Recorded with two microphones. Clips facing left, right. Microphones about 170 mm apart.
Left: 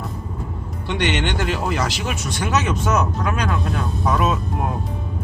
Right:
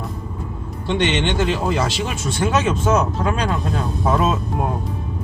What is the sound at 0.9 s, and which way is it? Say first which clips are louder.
Speech: right 3 dB; 25° right (ahead or behind).